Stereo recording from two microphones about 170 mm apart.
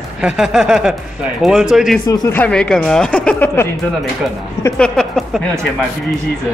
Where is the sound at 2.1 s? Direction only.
20° left (ahead or behind).